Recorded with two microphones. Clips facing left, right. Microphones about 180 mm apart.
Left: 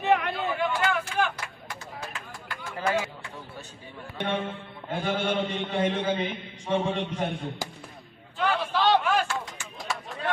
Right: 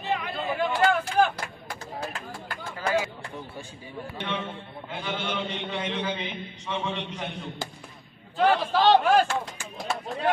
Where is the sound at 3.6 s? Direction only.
10° right (ahead or behind).